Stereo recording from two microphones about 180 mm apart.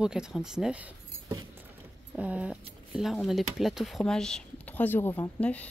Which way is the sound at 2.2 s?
5° right (ahead or behind).